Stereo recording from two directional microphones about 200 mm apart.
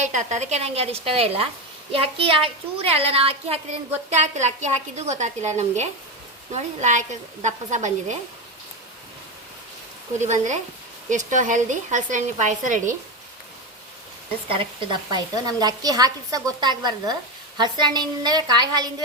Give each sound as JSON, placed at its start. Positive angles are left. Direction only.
{"t": 0.0, "sound": "a woman's voice", "side_deg": -35}
{"t": 10.2, "sound": "a woman's voice", "side_deg": -35}
{"t": 15.1, "sound": "a woman's voice", "side_deg": -20}